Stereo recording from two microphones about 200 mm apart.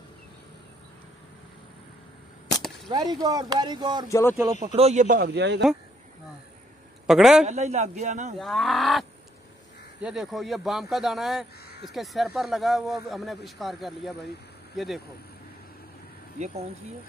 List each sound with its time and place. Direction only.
2.9 s speech: 20° right (ahead or behind)
4.1 s speech: 15° left (ahead or behind)
4.6 s speech: 35° right (ahead or behind); by 5.6 s 55° right (ahead or behind)
7.1 s speech: centre (ahead or behind)
7.4 s a man's voice: 35° right (ahead or behind)
8.4 s speech: centre (ahead or behind)
10.0 s speech: centre (ahead or behind)
16.3 s a man's voice: 35° right (ahead or behind)